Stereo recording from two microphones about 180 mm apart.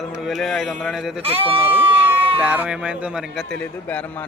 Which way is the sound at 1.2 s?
30° right (ahead or behind).